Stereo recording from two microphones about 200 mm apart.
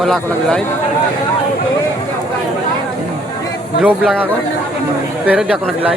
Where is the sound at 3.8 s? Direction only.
10° right (ahead or behind).